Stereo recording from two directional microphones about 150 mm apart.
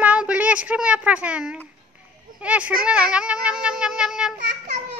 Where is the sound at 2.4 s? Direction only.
10° right (ahead or behind).